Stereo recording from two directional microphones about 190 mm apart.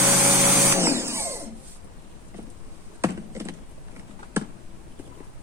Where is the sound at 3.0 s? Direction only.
15° right (ahead or behind).